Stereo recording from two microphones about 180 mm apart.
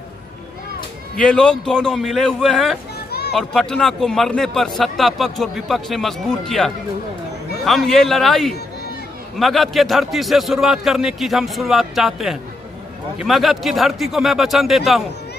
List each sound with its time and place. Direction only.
1.1 s a man's voice: 5° left (ahead or behind)
3.1 s children playing: 65° left (ahead or behind)
3.3 s a man's voice: 5° left (ahead or behind)